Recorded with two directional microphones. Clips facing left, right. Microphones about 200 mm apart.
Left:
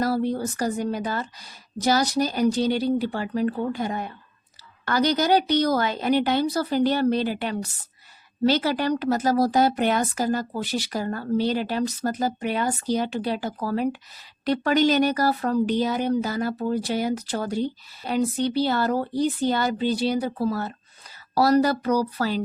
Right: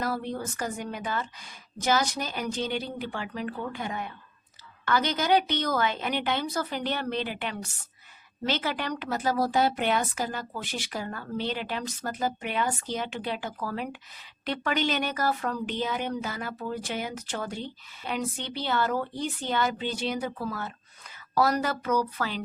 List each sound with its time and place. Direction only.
0.0 s speech: 35° left (ahead or behind)